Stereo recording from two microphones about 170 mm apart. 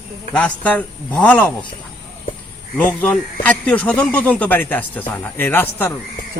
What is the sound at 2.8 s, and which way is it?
Speech, 10° left (ahead or behind).